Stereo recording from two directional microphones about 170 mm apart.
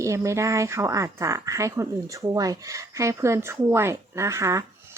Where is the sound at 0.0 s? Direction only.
15° right (ahead or behind).